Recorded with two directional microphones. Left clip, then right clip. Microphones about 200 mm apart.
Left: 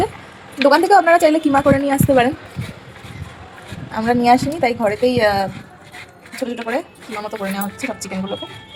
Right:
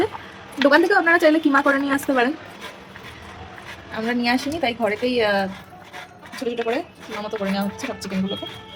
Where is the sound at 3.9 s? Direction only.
10° left (ahead or behind).